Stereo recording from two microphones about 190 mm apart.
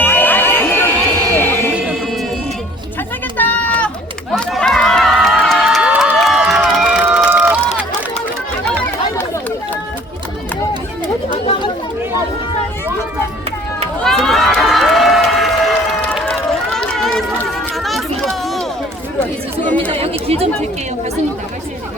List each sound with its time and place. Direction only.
0.0 s a sound: 10° left (ahead or behind)
3.3 s run: 5° left (ahead or behind)
14.0 s crowd: centre (ahead or behind)
16.1 s run: centre (ahead or behind)
18.2 s a sound: centre (ahead or behind)
19.6 s chatter: 10° left (ahead or behind)
19.9 s chatter: 30° right (ahead or behind)